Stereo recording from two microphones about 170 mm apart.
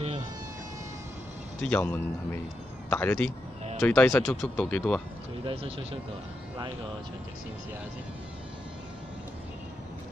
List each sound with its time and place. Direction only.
1.6 s speech: 10° left (ahead or behind)
5.4 s speech: 35° right (ahead or behind)